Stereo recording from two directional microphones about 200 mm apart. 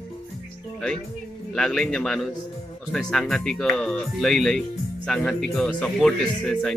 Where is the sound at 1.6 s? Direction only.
5° left (ahead or behind).